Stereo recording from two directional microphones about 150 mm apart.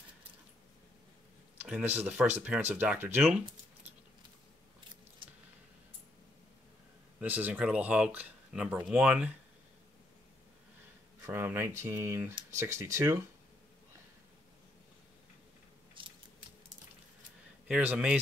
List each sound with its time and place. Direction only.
1.6 s speech: 10° right (ahead or behind)
7.2 s speech: 10° right (ahead or behind)
11.1 s speech: 20° right (ahead or behind)
16.0 s scissors: 35° right (ahead or behind)
17.6 s speech: 5° right (ahead or behind)